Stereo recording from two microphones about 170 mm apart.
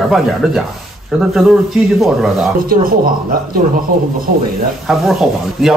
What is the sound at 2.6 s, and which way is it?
Speech, 55° right (ahead or behind).